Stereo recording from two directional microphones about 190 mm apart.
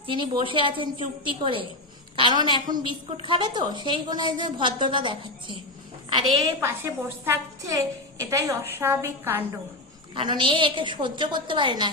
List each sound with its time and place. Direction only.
0.0 s a woman's voice: 25° right (ahead or behind)
6.1 s a woman's voice: 15° right (ahead or behind)
10.2 s a woman's voice: 25° right (ahead or behind)